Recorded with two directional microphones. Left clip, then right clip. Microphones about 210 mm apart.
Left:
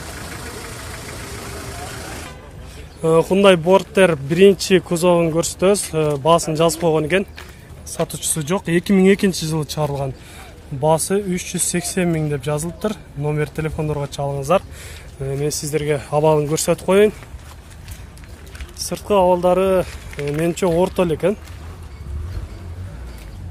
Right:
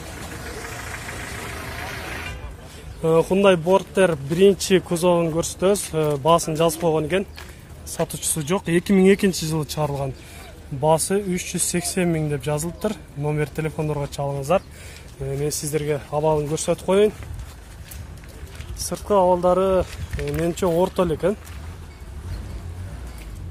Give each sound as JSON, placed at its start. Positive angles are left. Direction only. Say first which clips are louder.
{"t": 3.0, "sound": "speech", "louder": "left 3 dB", "side_deg": 5}
{"t": 16.1, "sound": "speech", "louder": "left 6 dB", "side_deg": 20}
{"t": 18.9, "sound": "speech", "louder": "left 3 dB", "side_deg": 0}
{"t": 20.2, "sound": "speech", "louder": "left 4 dB", "side_deg": -5}
{"t": 20.4, "sound": "speech", "louder": "left 3 dB", "side_deg": 10}